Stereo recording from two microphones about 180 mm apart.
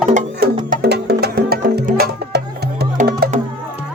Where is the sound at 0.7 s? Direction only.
60° right (ahead or behind).